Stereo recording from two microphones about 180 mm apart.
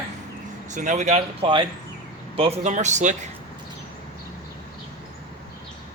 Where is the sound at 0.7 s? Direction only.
45° right (ahead or behind).